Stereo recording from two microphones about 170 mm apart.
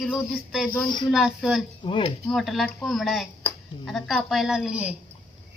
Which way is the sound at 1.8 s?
30° left (ahead or behind).